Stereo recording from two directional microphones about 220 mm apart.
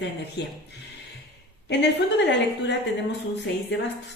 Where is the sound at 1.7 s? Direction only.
50° left (ahead or behind).